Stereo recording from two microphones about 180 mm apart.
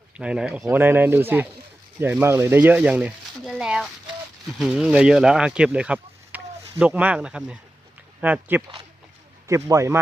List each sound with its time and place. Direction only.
0.2 s speech: 5° right (ahead or behind)